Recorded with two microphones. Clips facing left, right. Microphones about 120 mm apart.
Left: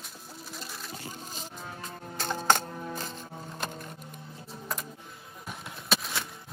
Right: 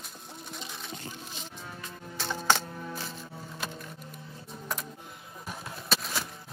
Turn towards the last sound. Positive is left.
turn(degrees=0)  # may be behind; listen again after turning